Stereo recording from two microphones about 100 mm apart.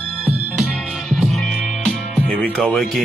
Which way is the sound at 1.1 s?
Centre (ahead or behind).